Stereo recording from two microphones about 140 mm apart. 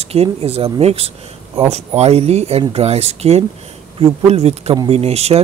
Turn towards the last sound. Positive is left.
turn(degrees=-45)  # may be behind; listen again after turning